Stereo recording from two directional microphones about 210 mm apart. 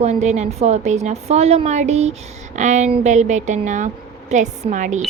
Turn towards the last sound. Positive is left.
turn(degrees=-35)  # may be behind; listen again after turning